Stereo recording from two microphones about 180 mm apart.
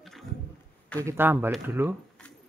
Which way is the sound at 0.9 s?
15° right (ahead or behind).